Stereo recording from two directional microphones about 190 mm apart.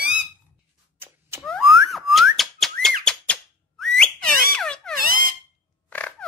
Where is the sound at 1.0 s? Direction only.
10° right (ahead or behind).